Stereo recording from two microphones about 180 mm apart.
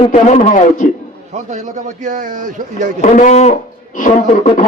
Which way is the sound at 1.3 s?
40° right (ahead or behind).